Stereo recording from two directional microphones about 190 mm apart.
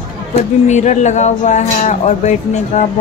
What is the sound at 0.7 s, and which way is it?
Speech, 40° left (ahead or behind).